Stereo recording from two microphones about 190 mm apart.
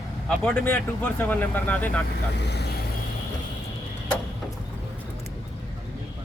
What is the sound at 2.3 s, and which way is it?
Speech, 60° left (ahead or behind).